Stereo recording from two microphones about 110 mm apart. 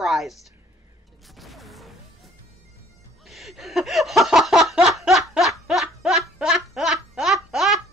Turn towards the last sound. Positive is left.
turn(degrees=-5)  # may be behind; listen again after turning